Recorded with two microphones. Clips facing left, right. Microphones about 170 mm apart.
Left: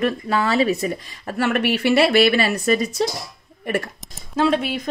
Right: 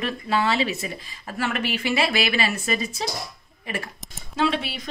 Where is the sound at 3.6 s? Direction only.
50° left (ahead or behind).